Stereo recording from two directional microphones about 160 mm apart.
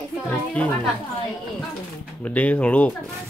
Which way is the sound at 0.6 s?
10° left (ahead or behind).